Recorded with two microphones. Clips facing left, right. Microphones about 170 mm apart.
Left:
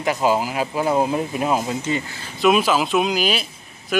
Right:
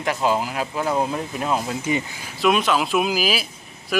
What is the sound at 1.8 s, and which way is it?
Speech, 15° right (ahead or behind).